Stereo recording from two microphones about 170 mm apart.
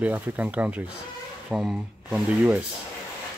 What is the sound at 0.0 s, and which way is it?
Speech, 10° right (ahead or behind).